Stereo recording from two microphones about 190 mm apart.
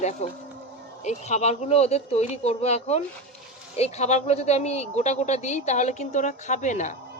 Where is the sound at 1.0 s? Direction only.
35° left (ahead or behind).